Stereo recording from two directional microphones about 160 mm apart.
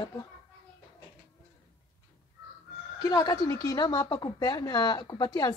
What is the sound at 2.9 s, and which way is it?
A woman's voice, 20° left (ahead or behind).